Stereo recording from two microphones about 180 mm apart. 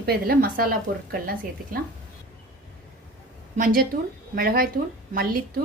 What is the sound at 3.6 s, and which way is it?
A woman's voice, 55° right (ahead or behind).